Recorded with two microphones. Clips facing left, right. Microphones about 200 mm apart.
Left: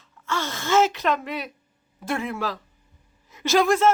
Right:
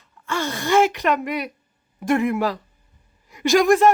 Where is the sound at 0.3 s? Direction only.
15° right (ahead or behind).